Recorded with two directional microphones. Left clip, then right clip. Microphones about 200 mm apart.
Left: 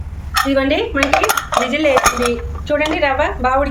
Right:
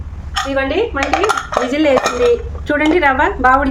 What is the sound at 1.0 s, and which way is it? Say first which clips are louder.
Speech: left 2 dB; 20° left (ahead or behind).